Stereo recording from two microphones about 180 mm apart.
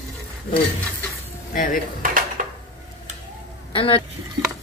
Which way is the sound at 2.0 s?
50° right (ahead or behind).